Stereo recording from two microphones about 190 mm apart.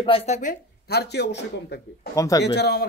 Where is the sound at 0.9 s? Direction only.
60° left (ahead or behind).